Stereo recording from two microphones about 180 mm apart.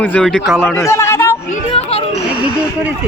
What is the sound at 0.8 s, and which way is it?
Speech, 15° left (ahead or behind).